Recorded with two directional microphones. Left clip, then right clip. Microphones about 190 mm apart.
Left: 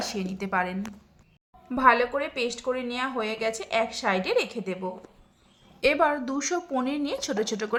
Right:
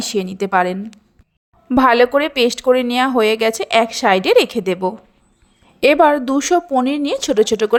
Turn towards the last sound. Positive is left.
turn(degrees=-40)  # may be behind; listen again after turning